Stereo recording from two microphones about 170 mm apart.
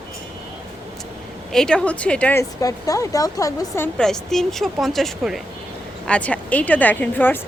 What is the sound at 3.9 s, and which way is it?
Speech, 5° left (ahead or behind).